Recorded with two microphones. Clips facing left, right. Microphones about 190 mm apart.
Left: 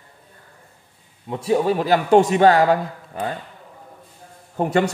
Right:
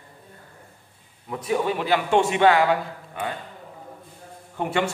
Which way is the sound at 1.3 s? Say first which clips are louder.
Left 5 dB; 30° left (ahead or behind).